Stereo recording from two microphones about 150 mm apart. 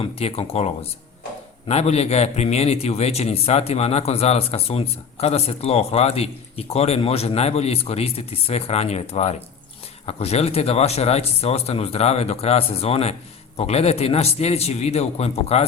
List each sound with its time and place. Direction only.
0.0 s a man's voice: 40° left (ahead or behind)